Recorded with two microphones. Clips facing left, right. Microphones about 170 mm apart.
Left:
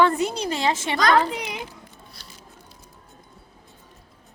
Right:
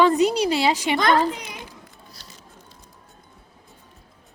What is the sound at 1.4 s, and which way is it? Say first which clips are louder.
Speech: left 6 dB; 75° left (ahead or behind).